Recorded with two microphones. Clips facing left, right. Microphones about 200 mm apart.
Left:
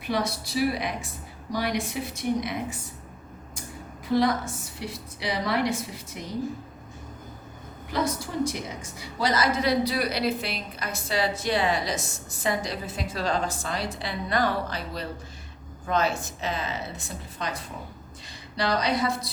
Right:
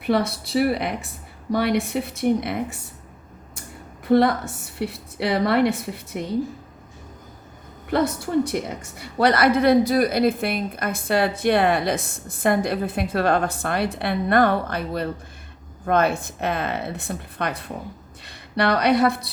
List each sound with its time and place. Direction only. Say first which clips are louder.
0.0 s a woman's voice: right 6 dB; 60° right (ahead or behind)
4.0 s a woman's voice: right 6 dB; 60° right (ahead or behind)
7.9 s a woman's voice: right 6 dB; 60° right (ahead or behind)